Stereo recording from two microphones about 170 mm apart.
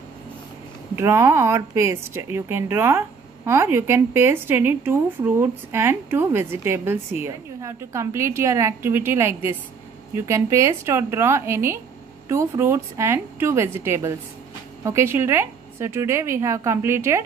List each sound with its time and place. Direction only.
0.9 s a woman's voice: 15° right (ahead or behind)